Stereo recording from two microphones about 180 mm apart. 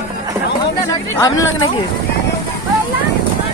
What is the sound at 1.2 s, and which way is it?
Speech, 15° left (ahead or behind).